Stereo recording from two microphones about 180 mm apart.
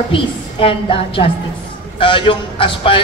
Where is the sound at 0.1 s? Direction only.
30° left (ahead or behind).